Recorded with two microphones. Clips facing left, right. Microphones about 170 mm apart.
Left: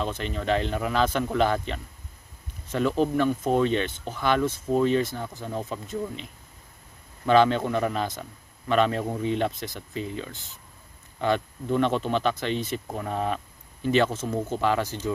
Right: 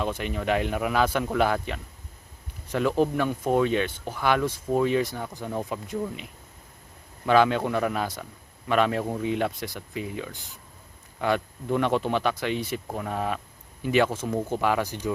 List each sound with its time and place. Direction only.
0.0 s speech: 10° right (ahead or behind)
7.3 s speech: 10° right (ahead or behind)